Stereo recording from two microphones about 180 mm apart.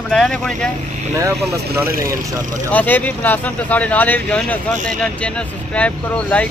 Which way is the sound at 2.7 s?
10° left (ahead or behind).